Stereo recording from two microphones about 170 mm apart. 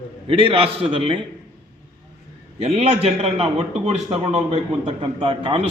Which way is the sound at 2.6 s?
35° right (ahead or behind).